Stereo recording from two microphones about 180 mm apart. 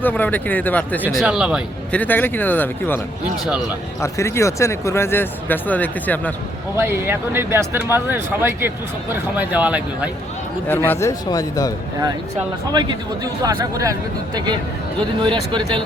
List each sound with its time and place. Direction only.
0.0 s speech: 10° left (ahead or behind)
1.0 s speech: 5° right (ahead or behind)
1.9 s speech: 10° left (ahead or behind)
4.0 s speech: 15° left (ahead or behind)
6.7 s speech: 15° right (ahead or behind)
10.7 s speech: 10° left (ahead or behind)
13.2 s speech: 20° right (ahead or behind)